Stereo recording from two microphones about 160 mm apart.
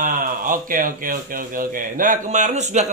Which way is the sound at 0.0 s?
60° right (ahead or behind).